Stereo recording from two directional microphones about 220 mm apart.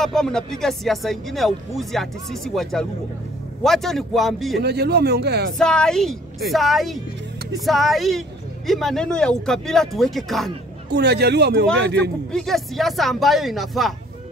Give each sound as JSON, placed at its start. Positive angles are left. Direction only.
{"t": 0.0, "sound": "speech", "side_deg": 0}
{"t": 4.6, "sound": "speech", "side_deg": -50}
{"t": 5.6, "sound": "speech", "side_deg": 5}
{"t": 10.9, "sound": "speech", "side_deg": -50}
{"t": 12.3, "sound": "speech", "side_deg": 0}